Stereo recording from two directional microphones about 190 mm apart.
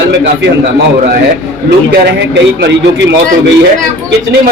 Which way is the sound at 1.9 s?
60° right (ahead or behind).